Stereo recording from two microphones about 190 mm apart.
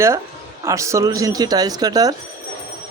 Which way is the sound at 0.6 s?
15° right (ahead or behind).